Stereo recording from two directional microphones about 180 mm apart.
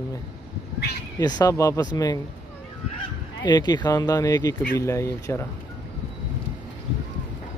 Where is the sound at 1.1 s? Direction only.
20° left (ahead or behind).